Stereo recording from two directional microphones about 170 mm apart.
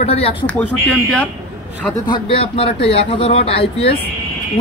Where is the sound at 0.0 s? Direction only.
35° left (ahead or behind).